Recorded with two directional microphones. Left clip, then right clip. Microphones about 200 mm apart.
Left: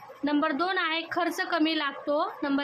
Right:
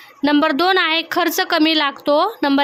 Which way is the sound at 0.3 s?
55° right (ahead or behind).